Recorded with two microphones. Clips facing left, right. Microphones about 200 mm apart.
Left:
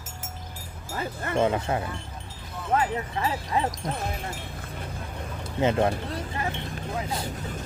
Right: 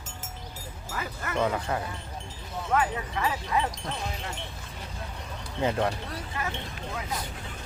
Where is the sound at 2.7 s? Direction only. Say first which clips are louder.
Left 2 dB; 35° left (ahead or behind).